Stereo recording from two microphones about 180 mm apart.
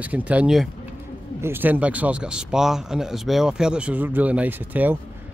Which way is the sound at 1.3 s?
10° right (ahead or behind).